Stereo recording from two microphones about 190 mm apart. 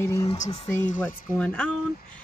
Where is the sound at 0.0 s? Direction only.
15° left (ahead or behind).